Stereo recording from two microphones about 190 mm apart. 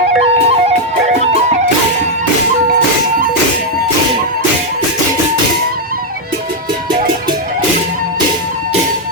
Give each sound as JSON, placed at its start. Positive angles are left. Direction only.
{"t": 0.4, "sound": "music", "side_deg": -35}